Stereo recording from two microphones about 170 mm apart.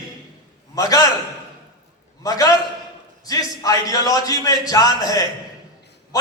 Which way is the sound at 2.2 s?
20° left (ahead or behind).